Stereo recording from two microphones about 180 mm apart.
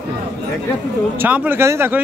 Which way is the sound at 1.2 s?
10° right (ahead or behind).